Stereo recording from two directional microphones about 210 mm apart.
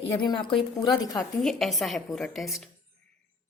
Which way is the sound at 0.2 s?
25° left (ahead or behind).